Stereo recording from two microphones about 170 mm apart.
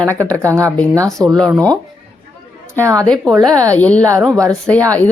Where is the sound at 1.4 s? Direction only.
5° left (ahead or behind).